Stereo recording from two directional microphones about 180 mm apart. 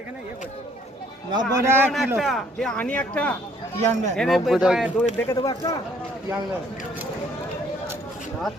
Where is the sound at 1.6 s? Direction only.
10° right (ahead or behind).